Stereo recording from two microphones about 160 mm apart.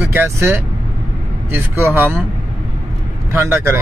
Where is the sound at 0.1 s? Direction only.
15° right (ahead or behind).